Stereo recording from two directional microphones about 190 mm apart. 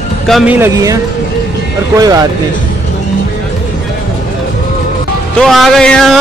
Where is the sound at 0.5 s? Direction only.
15° right (ahead or behind).